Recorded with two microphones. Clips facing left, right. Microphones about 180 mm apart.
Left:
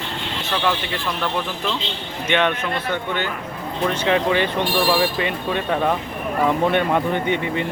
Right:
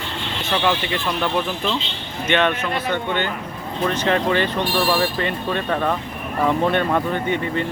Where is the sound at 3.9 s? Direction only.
10° left (ahead or behind).